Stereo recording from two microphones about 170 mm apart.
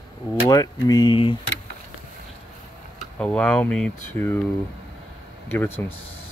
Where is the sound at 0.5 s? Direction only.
20° left (ahead or behind).